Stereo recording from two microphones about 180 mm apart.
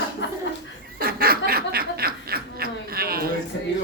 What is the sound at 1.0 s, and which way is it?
Snicker, 55° right (ahead or behind).